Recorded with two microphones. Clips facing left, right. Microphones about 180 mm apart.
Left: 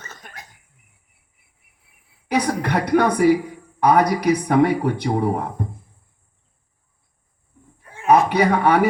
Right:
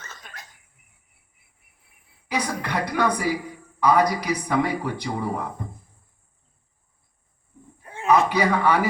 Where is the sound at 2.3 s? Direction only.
60° left (ahead or behind).